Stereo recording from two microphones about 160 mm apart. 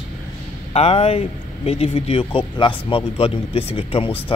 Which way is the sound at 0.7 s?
40° left (ahead or behind).